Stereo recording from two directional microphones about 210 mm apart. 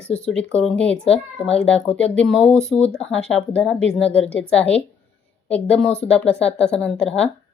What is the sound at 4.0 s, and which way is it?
Speech, 30° left (ahead or behind).